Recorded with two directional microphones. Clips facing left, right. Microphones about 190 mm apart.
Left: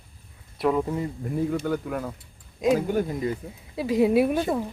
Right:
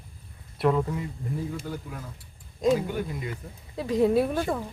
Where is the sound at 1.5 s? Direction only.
65° left (ahead or behind).